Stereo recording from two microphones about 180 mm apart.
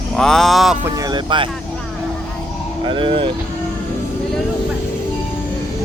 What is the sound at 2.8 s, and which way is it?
Speech, 30° right (ahead or behind).